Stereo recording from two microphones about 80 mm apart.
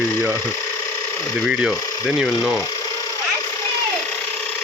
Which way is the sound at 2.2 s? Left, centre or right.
Centre.